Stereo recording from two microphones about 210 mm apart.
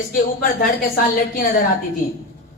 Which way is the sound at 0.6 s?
45° left (ahead or behind).